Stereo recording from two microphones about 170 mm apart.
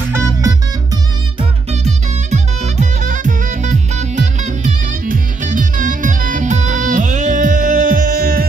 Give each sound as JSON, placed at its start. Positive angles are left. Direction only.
{"t": 0.1, "sound": "music", "side_deg": -15}
{"t": 1.7, "sound": "music", "side_deg": -40}